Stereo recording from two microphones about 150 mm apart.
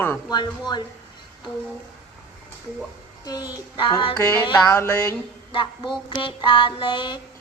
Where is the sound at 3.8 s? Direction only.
30° left (ahead or behind).